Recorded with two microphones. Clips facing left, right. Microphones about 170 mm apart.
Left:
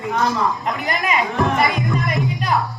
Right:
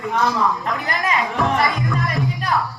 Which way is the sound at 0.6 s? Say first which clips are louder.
Left 1 dB; 20° left (ahead or behind).